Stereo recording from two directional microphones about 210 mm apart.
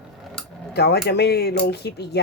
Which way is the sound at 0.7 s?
50° left (ahead or behind).